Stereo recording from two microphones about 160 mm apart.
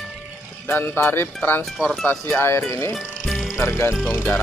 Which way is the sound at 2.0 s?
10° left (ahead or behind).